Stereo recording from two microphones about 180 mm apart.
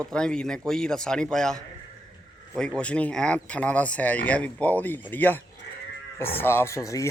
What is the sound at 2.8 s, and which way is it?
Speech, 5° left (ahead or behind).